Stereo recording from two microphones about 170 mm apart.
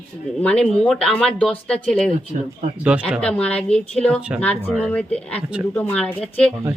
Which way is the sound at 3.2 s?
5° left (ahead or behind).